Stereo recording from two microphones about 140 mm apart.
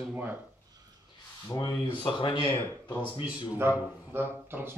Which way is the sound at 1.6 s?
35° left (ahead or behind).